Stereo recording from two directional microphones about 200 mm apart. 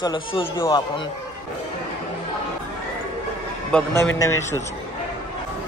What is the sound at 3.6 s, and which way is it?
Speech, 5° left (ahead or behind).